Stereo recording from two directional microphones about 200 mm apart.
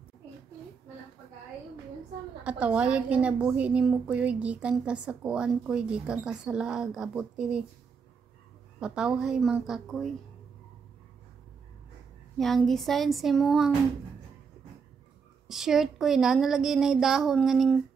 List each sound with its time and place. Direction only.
2.4 s a woman's voice: 5° right (ahead or behind)
8.7 s a woman's voice: 5° right (ahead or behind)
12.4 s a woman's voice: centre (ahead or behind)
15.4 s a woman's voice: centre (ahead or behind)